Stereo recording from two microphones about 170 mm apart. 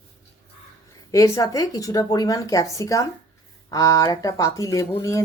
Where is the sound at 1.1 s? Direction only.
20° left (ahead or behind).